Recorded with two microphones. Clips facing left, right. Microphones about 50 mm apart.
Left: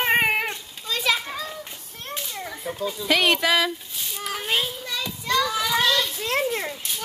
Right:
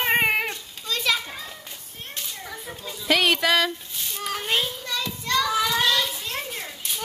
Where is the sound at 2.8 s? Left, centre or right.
Centre.